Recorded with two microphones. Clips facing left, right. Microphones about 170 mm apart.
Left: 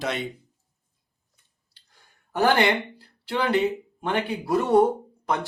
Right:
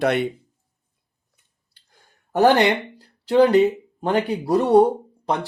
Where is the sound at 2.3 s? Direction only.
40° right (ahead or behind).